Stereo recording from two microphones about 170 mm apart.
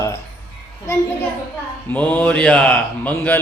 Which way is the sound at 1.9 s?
10° left (ahead or behind).